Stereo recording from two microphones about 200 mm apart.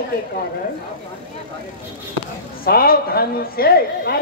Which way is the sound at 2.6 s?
50° left (ahead or behind).